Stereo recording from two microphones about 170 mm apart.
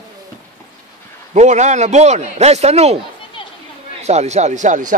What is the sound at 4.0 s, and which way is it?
Speech, 40° right (ahead or behind).